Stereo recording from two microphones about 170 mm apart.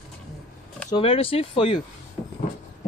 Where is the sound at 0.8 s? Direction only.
30° left (ahead or behind).